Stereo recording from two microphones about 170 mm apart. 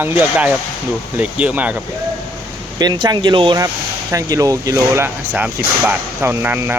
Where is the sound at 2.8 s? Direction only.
25° right (ahead or behind).